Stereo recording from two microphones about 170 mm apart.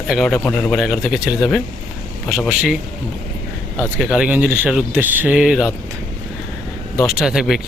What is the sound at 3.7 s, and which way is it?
Speech, 5° right (ahead or behind).